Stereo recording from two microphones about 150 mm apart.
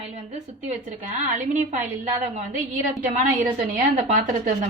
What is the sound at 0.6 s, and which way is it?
A woman's voice, 55° right (ahead or behind).